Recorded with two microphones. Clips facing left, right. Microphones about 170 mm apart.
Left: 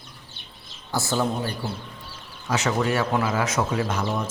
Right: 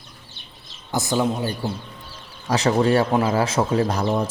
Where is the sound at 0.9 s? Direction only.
15° right (ahead or behind).